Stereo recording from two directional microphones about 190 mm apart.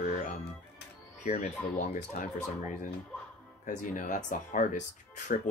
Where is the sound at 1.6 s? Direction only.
40° left (ahead or behind).